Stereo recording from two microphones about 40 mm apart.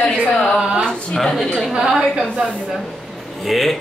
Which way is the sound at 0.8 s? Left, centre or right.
Centre.